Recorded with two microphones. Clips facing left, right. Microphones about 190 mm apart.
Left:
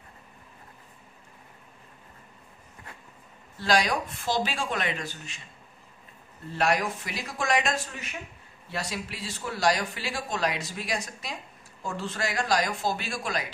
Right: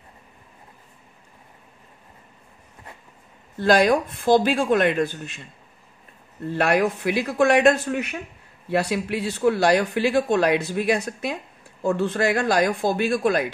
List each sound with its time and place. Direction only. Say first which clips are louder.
3.5 s speech: right 8 dB; 55° right (ahead or behind)